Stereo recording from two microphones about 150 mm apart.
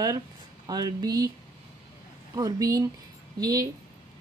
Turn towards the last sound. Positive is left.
turn(degrees=-25)  # may be behind; listen again after turning